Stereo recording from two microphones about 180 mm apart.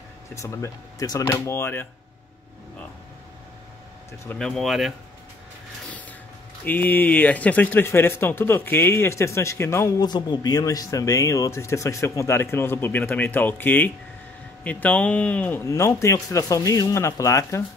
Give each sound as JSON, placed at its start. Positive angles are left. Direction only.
{"t": 0.3, "sound": "speech", "side_deg": 15}
{"t": 4.3, "sound": "speech", "side_deg": 5}
{"t": 6.6, "sound": "speech", "side_deg": 10}